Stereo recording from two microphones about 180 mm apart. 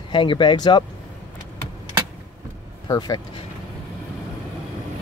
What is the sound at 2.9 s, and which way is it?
Speech, 20° left (ahead or behind).